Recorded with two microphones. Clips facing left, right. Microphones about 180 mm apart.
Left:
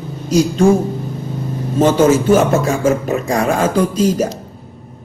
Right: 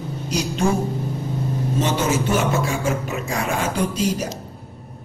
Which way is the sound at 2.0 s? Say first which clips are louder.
Left 9 dB; 45° left (ahead or behind).